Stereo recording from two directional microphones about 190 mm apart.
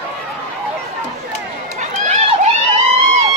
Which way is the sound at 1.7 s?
35° right (ahead or behind).